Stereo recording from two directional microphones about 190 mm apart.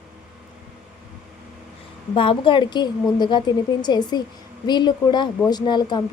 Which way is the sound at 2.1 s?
25° left (ahead or behind).